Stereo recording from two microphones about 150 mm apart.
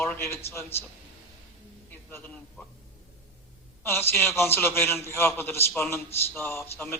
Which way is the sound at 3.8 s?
15° left (ahead or behind).